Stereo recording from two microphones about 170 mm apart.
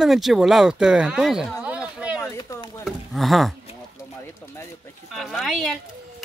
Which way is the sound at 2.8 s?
Centre (ahead or behind).